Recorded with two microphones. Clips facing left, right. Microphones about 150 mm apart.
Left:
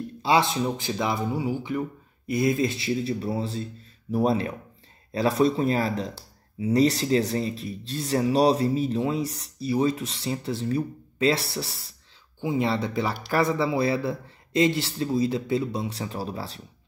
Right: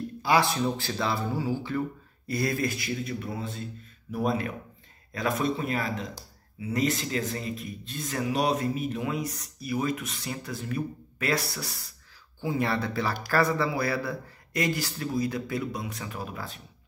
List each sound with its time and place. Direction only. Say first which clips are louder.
0.2 s speech: left 2 dB; 25° left (ahead or behind)